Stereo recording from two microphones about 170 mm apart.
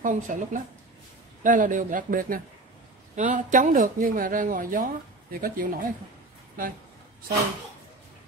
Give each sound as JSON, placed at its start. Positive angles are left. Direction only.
{"t": 0.0, "sound": "speech", "side_deg": -50}